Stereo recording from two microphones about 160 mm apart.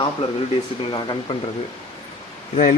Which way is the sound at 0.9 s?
30° left (ahead or behind).